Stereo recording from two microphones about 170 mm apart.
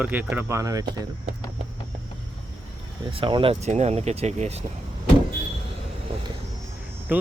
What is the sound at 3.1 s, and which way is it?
Speech, 30° right (ahead or behind).